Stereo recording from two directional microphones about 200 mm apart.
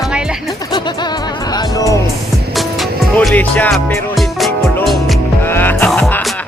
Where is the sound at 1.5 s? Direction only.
15° left (ahead or behind).